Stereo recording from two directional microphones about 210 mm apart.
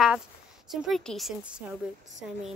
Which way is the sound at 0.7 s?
Centre (ahead or behind).